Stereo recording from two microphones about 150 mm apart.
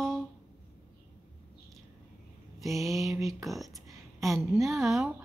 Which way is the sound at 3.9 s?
20° right (ahead or behind).